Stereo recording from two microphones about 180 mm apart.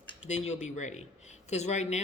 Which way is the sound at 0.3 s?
40° left (ahead or behind).